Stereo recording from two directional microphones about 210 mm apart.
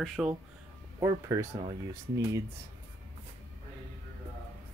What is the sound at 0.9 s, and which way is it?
Speech, 15° right (ahead or behind).